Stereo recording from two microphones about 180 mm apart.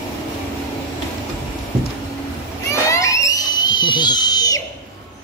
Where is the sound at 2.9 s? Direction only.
15° left (ahead or behind).